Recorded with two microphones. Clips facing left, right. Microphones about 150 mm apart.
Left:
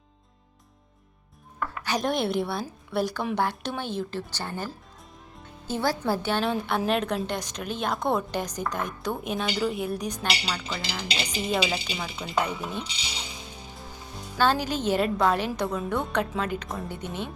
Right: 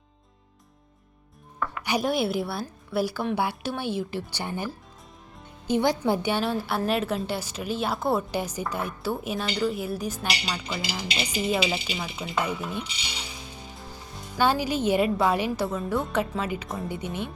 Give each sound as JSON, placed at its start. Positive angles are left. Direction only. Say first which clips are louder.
{"t": 1.8, "sound": "a woman's voice", "louder": "right 1 dB", "side_deg": -10}
{"t": 14.3, "sound": "a woman's voice", "louder": "right 1 dB", "side_deg": -10}